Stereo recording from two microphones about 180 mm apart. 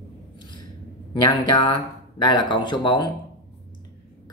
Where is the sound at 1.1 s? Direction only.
25° left (ahead or behind).